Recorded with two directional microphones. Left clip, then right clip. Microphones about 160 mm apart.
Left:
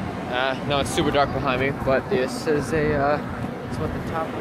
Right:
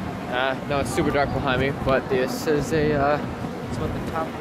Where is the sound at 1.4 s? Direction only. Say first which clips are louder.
Even; 25° right (ahead or behind).